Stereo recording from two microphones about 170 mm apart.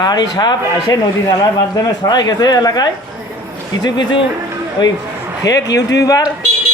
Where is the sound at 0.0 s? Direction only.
25° left (ahead or behind).